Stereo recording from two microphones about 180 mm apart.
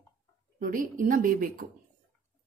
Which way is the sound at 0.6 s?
50° right (ahead or behind).